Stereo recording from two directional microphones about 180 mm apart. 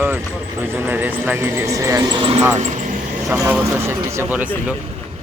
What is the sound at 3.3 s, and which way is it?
Speech, 10° right (ahead or behind).